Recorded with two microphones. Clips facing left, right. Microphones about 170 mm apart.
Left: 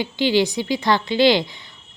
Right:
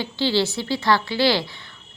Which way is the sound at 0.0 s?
15° left (ahead or behind).